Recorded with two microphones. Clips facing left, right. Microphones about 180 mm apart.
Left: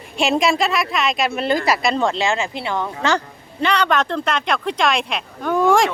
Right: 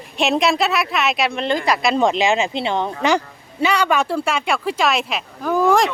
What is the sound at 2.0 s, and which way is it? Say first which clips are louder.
Speech: right 3 dB; 15° right (ahead or behind).